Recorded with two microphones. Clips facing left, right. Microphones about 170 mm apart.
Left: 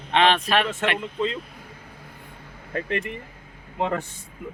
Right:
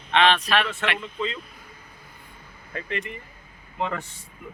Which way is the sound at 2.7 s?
55° left (ahead or behind).